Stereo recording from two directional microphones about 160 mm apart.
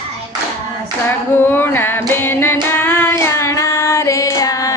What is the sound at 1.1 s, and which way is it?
Female singing, 15° left (ahead or behind).